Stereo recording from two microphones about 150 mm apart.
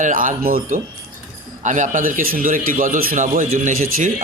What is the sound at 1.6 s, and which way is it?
Speech, 55° right (ahead or behind).